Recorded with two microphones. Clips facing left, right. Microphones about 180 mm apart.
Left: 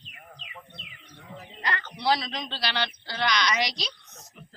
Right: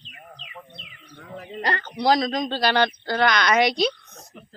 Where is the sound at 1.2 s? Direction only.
65° right (ahead or behind).